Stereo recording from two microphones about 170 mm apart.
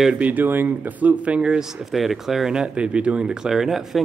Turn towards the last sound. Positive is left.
turn(degrees=0)  # may be behind; listen again after turning